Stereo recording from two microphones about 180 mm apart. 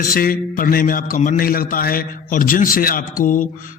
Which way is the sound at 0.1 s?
50° left (ahead or behind).